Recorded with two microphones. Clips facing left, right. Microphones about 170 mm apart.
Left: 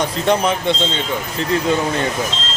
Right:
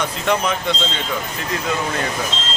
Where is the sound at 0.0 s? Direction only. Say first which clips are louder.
Left 3 dB; 30° left (ahead or behind).